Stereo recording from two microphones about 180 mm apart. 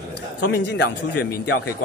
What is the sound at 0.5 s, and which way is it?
Speech, 70° left (ahead or behind).